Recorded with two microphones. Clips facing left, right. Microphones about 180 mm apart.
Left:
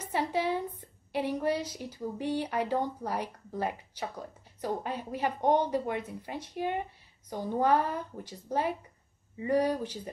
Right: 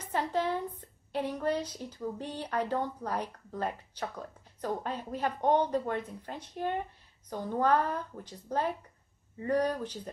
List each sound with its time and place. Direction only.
0.1 s a woman's voice: 10° left (ahead or behind)